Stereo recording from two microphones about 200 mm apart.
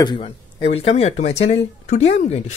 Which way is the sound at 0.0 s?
25° left (ahead or behind).